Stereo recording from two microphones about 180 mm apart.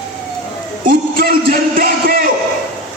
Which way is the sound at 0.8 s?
55° right (ahead or behind).